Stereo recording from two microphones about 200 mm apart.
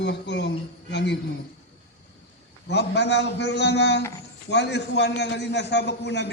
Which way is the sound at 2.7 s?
60° left (ahead or behind).